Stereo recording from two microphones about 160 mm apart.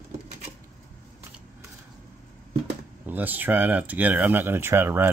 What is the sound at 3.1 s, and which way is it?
Speech, 10° right (ahead or behind).